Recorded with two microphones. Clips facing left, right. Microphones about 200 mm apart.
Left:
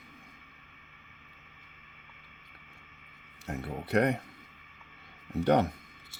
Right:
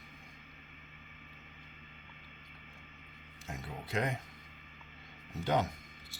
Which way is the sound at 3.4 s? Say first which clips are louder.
Left 7 dB; 65° left (ahead or behind).